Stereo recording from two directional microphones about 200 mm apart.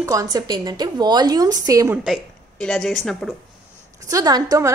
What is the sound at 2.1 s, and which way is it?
A woman's voice, 5° left (ahead or behind).